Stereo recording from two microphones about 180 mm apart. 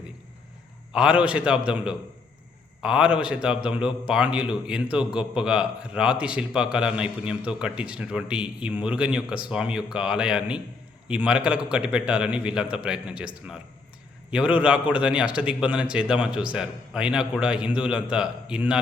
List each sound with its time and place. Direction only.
0.9 s a man's voice: 5° right (ahead or behind)